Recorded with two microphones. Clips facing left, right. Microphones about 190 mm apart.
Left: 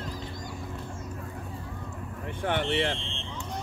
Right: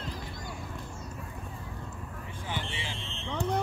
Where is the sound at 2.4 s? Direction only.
65° left (ahead or behind).